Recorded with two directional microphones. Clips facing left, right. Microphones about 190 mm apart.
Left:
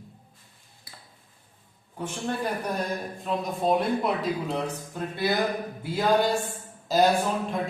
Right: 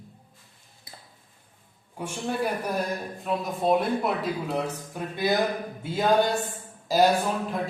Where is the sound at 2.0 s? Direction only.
10° right (ahead or behind).